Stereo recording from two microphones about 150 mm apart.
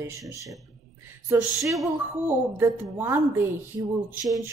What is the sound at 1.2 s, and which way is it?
A woman's voice, 15° right (ahead or behind).